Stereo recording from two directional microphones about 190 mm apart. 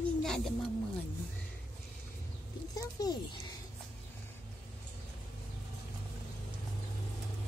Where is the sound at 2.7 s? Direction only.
20° left (ahead or behind).